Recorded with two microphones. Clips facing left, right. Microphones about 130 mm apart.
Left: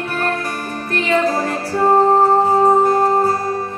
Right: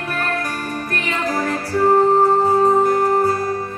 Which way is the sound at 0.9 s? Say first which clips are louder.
Left 7 dB; 25° left (ahead or behind).